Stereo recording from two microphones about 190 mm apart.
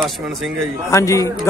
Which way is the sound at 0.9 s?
15° left (ahead or behind).